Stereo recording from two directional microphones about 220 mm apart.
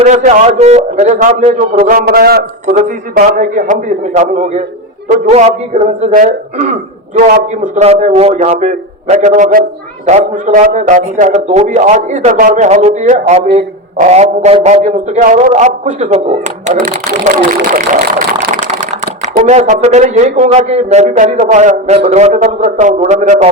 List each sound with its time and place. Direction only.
0.0 s a man's voice: 35° right (ahead or behind)